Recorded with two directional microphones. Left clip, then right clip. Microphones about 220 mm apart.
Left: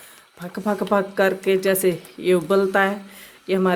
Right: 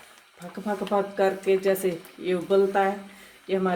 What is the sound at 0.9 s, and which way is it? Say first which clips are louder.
Speech: left 4 dB; 30° left (ahead or behind).